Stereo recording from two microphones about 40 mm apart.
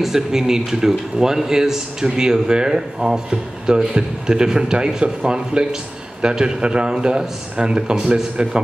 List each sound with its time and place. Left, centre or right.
0.0 s speech: centre